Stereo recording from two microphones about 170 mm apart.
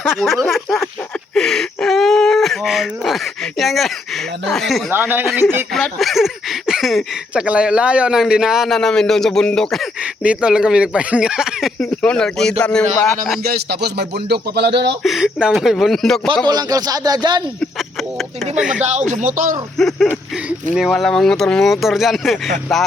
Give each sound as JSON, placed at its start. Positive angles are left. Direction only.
{"t": 0.0, "sound": "speech", "side_deg": 0}
{"t": 4.9, "sound": "speech", "side_deg": -10}
{"t": 5.7, "sound": "speech", "side_deg": 0}
{"t": 13.4, "sound": "speech", "side_deg": -70}
{"t": 15.0, "sound": "speech", "side_deg": -5}
{"t": 16.5, "sound": "speech", "side_deg": -20}
{"t": 17.6, "sound": "speech", "side_deg": 0}
{"t": 18.8, "sound": "speech", "side_deg": -45}
{"t": 19.7, "sound": "speech", "side_deg": 0}